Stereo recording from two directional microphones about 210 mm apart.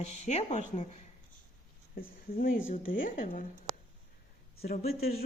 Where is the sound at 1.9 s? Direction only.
40° left (ahead or behind).